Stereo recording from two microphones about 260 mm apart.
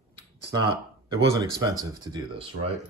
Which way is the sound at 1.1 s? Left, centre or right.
Centre.